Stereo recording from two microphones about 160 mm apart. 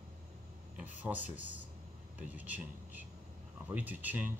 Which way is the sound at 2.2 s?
10° right (ahead or behind).